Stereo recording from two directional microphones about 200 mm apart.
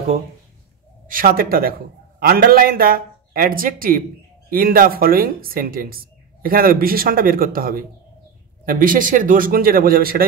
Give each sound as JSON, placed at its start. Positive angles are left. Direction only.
{"t": 1.0, "sound": "a man's voice", "side_deg": -45}